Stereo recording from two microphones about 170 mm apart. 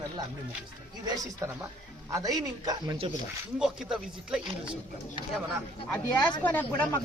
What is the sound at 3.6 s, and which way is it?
Speech, 5° right (ahead or behind).